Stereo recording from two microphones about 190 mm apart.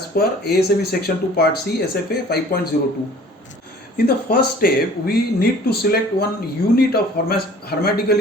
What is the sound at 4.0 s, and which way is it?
Speech, 55° left (ahead or behind).